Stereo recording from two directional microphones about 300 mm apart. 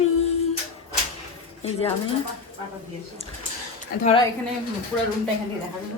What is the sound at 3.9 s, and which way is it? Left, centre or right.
Speech, left.